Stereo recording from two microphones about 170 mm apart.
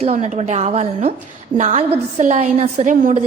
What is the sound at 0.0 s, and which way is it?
A woman's voice, 40° right (ahead or behind).